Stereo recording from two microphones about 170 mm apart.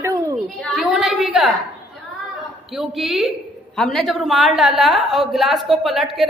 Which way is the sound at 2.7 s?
Centre (ahead or behind).